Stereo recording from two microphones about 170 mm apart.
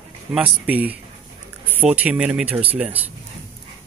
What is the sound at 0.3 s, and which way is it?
Speech, 10° right (ahead or behind).